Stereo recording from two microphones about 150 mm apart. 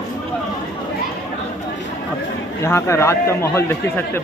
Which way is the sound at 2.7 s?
20° left (ahead or behind).